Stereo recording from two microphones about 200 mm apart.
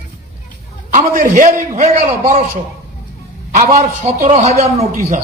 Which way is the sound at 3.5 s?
35° right (ahead or behind).